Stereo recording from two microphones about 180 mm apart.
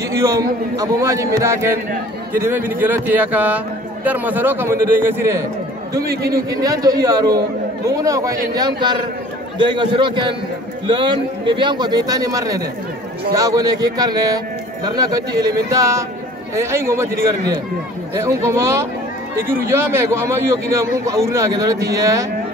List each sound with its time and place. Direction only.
0.1 s a man's voice: 15° right (ahead or behind)